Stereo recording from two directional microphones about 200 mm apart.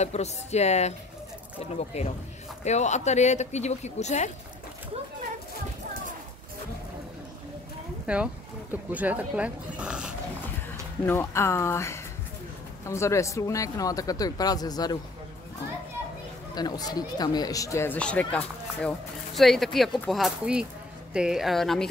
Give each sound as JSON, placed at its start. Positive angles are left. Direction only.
{"t": 0.0, "sound": "speech", "side_deg": 35}
{"t": 8.1, "sound": "speech", "side_deg": -5}
{"t": 11.1, "sound": "speech", "side_deg": 10}
{"t": 16.5, "sound": "speech", "side_deg": 20}